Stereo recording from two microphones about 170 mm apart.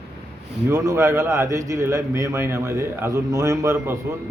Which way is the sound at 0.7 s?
20° right (ahead or behind).